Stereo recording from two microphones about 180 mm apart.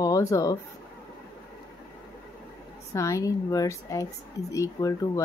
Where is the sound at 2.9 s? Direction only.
15° left (ahead or behind).